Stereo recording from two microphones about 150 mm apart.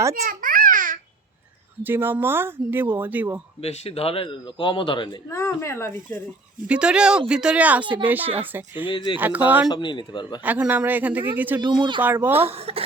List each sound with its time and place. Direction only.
0.3 s babbling: 65° right (ahead or behind)
1.8 s speech: 15° right (ahead or behind)
3.6 s a man's voice: 40° left (ahead or behind)
5.3 s speech: 20° left (ahead or behind)
6.7 s speech: 5° right (ahead or behind)
8.9 s a man's voice: 35° left (ahead or behind)
9.1 s speech: 10° right (ahead or behind)
9.6 s a man's voice: 30° left (ahead or behind)
10.4 s speech: 10° right (ahead or behind)
11.6 s speech: 30° right (ahead or behind)
12.0 s speech: 15° right (ahead or behind)
12.4 s speech: 40° right (ahead or behind)